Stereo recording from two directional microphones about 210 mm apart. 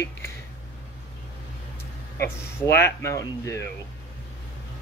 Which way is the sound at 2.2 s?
10° left (ahead or behind).